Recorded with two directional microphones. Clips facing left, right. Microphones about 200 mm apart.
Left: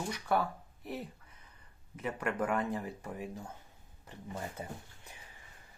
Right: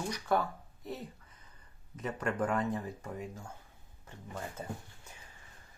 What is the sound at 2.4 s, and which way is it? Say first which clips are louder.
Speech: right 1 dB; 10° left (ahead or behind).